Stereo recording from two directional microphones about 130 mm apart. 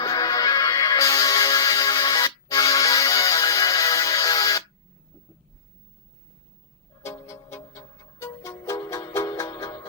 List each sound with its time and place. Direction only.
0.0 s music: 30° left (ahead or behind)
7.0 s music: 20° left (ahead or behind)